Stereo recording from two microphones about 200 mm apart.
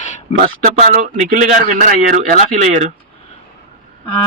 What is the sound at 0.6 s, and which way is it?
Speech, 35° right (ahead or behind).